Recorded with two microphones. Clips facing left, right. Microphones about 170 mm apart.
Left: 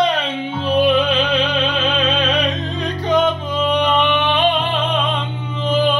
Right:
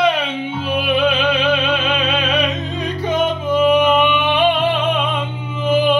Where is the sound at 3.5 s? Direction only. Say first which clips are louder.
Right 4 dB; 10° right (ahead or behind).